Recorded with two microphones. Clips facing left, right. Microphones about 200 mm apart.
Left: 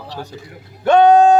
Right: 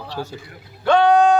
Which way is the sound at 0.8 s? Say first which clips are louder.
Left 4 dB; 20° left (ahead or behind).